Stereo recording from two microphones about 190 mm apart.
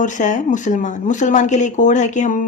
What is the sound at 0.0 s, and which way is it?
Speech, 40° left (ahead or behind).